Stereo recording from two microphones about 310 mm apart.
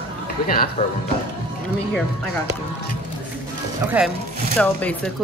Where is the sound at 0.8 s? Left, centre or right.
Centre.